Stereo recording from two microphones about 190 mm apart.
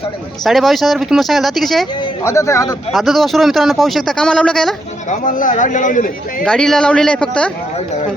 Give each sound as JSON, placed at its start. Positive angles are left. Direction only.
{"t": 0.4, "sound": "speech", "side_deg": 0}
{"t": 2.2, "sound": "speech", "side_deg": 15}
{"t": 2.9, "sound": "speech", "side_deg": 0}
{"t": 5.0, "sound": "speech", "side_deg": 40}
{"t": 6.4, "sound": "speech", "side_deg": 5}